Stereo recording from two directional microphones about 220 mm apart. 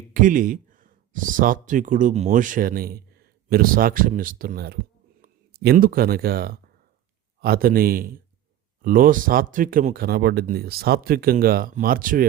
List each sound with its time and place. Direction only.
0.1 s speech: 35° right (ahead or behind)